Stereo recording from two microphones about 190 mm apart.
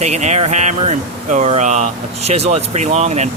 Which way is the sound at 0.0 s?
35° right (ahead or behind).